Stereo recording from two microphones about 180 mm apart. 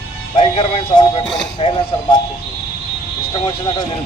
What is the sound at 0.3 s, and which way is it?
Speech, 30° left (ahead or behind).